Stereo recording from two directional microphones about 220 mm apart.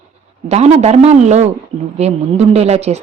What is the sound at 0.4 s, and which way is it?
A woman's voice, 30° right (ahead or behind).